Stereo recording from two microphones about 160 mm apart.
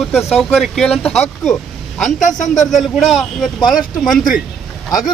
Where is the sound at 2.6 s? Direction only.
Centre (ahead or behind).